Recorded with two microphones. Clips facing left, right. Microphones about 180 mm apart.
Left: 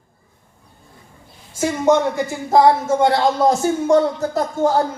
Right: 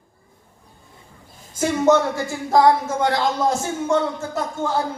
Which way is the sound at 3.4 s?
35° left (ahead or behind).